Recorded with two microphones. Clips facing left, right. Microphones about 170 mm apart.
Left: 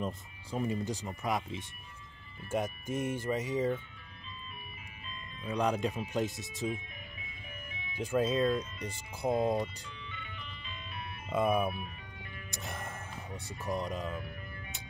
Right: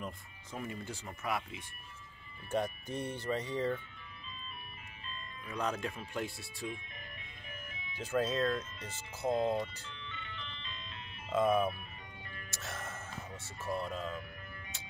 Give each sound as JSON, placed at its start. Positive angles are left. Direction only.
{"t": 0.0, "sound": "speech", "side_deg": 25}
{"t": 2.5, "sound": "speech", "side_deg": 10}
{"t": 5.4, "sound": "speech", "side_deg": 15}
{"t": 7.9, "sound": "speech", "side_deg": 10}